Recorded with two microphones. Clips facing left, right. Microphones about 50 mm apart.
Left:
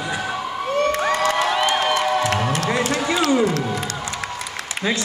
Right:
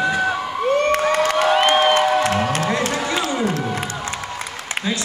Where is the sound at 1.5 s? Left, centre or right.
Right.